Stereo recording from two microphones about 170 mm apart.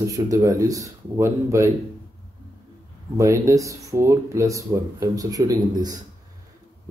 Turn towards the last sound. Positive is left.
turn(degrees=-20)  # may be behind; listen again after turning